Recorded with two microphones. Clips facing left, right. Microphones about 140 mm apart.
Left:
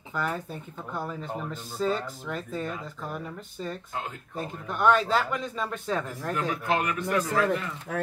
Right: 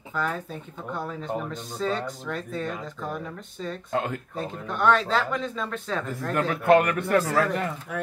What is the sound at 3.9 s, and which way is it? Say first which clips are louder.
Speech: right 8 dB; 75° right (ahead or behind).